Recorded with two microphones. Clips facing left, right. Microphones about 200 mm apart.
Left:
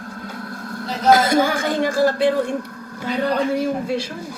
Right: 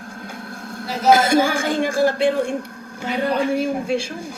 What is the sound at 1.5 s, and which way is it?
Speech, 10° right (ahead or behind).